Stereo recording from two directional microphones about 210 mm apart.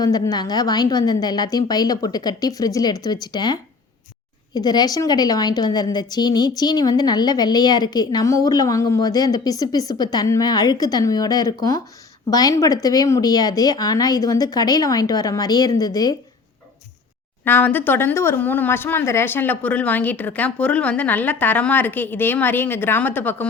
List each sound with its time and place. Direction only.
0.0 s a woman's voice: 20° left (ahead or behind)
17.4 s speech: 10° left (ahead or behind)